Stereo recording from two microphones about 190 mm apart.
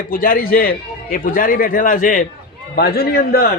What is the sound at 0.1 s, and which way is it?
A man's voice, 50° left (ahead or behind).